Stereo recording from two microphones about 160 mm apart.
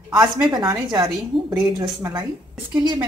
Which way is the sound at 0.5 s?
25° right (ahead or behind).